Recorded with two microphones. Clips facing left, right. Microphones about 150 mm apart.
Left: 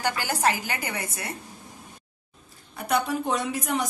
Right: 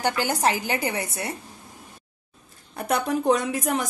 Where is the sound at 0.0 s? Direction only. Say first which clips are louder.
Right 2 dB; 20° right (ahead or behind).